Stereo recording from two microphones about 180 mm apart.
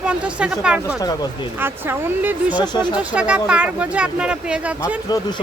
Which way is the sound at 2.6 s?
25° left (ahead or behind).